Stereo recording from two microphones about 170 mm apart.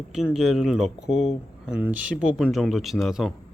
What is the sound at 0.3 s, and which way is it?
Speech, centre (ahead or behind).